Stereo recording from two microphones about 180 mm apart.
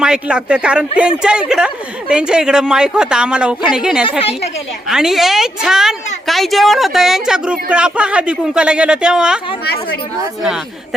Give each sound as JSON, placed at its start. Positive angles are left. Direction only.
{"t": 0.0, "sound": "speech", "side_deg": -5}
{"t": 9.6, "sound": "speech", "side_deg": 60}